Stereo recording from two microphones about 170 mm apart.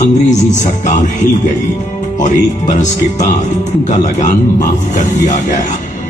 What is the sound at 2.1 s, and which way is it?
A man's voice, 45° left (ahead or behind).